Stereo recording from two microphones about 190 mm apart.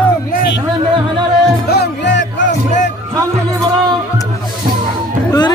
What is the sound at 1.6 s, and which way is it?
Music, 55° left (ahead or behind).